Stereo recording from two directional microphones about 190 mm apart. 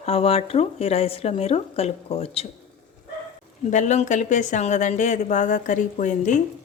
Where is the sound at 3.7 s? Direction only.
40° left (ahead or behind).